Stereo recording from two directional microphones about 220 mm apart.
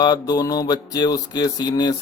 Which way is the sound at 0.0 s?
20° left (ahead or behind).